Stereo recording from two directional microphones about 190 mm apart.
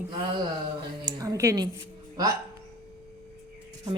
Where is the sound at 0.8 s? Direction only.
20° right (ahead or behind).